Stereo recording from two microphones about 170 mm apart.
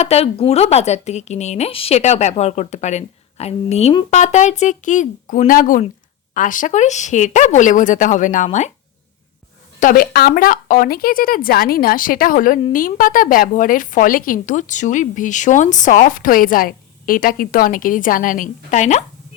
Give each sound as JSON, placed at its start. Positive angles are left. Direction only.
{"t": 0.0, "sound": "a woman's voice", "side_deg": 40}
{"t": 9.8, "sound": "a woman's voice", "side_deg": 55}